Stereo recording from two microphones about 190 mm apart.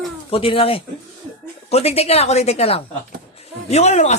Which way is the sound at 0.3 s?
30° left (ahead or behind).